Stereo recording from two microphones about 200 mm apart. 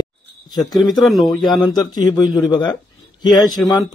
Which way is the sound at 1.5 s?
20° left (ahead or behind).